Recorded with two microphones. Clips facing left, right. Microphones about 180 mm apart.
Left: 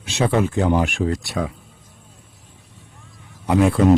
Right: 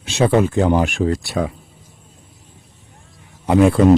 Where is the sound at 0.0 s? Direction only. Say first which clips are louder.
Right 4 dB; 35° right (ahead or behind).